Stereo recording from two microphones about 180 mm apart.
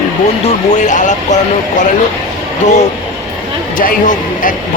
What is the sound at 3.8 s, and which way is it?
Speech, 50° left (ahead or behind).